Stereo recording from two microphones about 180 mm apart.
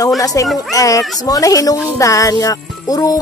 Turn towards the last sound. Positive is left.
turn(degrees=20)  # may be behind; listen again after turning